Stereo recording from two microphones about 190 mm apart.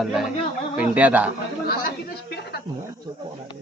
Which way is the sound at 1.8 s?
55° left (ahead or behind).